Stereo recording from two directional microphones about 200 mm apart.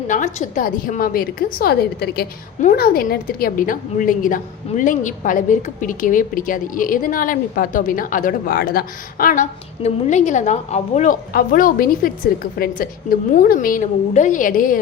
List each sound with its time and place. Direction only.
0.1 s a woman's voice: 40° left (ahead or behind)